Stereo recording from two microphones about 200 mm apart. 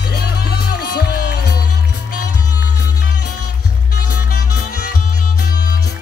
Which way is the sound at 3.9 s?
50° left (ahead or behind).